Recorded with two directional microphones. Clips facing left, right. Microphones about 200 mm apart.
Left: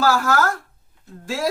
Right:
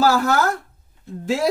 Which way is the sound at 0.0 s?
25° right (ahead or behind).